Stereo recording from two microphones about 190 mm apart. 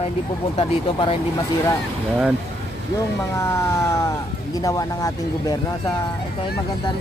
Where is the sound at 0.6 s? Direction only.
25° left (ahead or behind).